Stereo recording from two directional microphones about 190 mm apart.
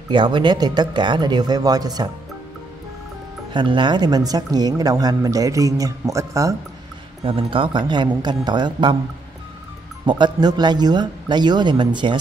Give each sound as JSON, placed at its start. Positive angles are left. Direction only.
{"t": 0.1, "sound": "speech", "side_deg": -25}
{"t": 3.5, "sound": "speech", "side_deg": -25}
{"t": 7.2, "sound": "speech", "side_deg": -30}
{"t": 10.0, "sound": "speech", "side_deg": -25}